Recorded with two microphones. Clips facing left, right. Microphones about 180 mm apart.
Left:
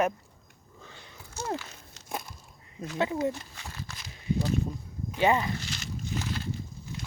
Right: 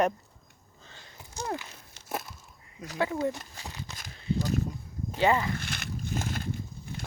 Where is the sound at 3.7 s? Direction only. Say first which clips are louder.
Right 1 dB; 15° right (ahead or behind).